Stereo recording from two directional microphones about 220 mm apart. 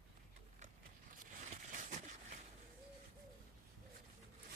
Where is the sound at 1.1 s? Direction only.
35° right (ahead or behind).